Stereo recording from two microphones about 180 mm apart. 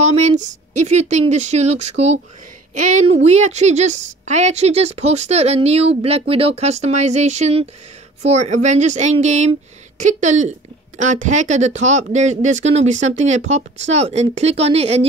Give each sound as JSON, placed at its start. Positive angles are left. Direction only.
{"t": 0.4, "sound": "a woman's voice", "side_deg": -40}